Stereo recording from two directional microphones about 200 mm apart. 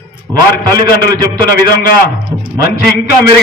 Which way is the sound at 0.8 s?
50° left (ahead or behind).